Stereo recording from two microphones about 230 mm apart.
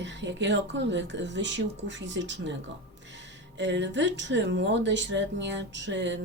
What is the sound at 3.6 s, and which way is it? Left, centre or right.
A woman's voice, right.